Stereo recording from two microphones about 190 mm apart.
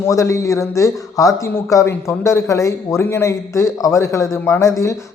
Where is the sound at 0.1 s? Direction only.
15° left (ahead or behind).